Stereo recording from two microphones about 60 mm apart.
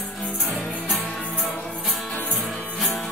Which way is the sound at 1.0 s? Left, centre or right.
Centre.